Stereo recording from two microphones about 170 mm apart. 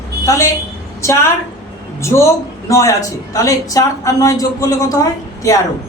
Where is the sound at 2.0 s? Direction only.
15° left (ahead or behind).